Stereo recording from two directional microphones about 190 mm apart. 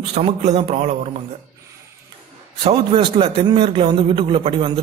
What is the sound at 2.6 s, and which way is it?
A man's voice, 30° right (ahead or behind).